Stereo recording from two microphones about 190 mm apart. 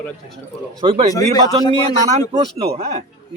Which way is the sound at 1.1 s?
20° left (ahead or behind).